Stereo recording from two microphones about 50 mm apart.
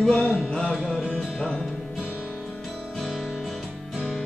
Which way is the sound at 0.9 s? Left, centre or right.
Centre.